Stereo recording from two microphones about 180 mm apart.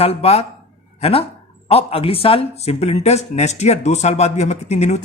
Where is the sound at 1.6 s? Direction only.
35° left (ahead or behind).